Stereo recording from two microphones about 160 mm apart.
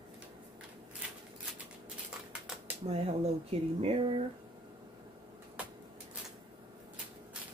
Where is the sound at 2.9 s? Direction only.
40° right (ahead or behind).